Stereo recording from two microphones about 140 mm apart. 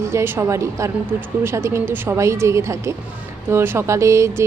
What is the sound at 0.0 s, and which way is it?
Speech, 20° right (ahead or behind).